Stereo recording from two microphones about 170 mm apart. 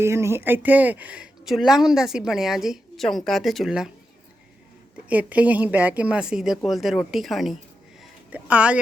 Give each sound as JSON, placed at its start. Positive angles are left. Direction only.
{"t": 0.0, "sound": "speech", "side_deg": -15}
{"t": 5.0, "sound": "speech", "side_deg": -10}